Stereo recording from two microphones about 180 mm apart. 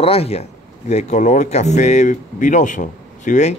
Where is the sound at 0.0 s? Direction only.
35° left (ahead or behind).